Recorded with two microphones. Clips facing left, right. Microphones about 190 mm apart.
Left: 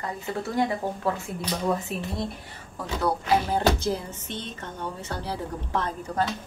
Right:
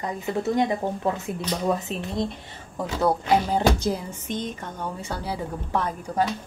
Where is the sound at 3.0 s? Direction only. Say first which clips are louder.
Right 3 dB; 15° right (ahead or behind).